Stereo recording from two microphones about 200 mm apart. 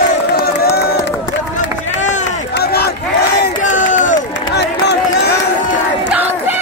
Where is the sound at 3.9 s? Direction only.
40° left (ahead or behind).